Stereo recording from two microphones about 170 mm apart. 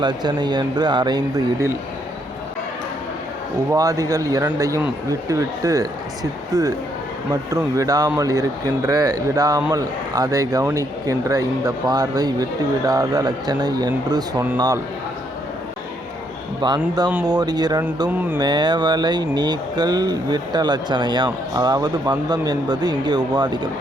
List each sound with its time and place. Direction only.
0.0 s speech: 25° right (ahead or behind)
3.7 s speech: 20° right (ahead or behind)
16.6 s speech: 25° right (ahead or behind)